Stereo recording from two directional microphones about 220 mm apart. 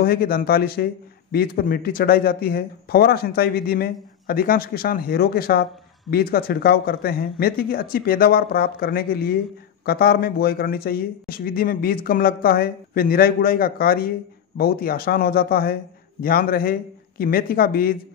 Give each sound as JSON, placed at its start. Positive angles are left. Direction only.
{"t": 0.0, "sound": "speech", "side_deg": 45}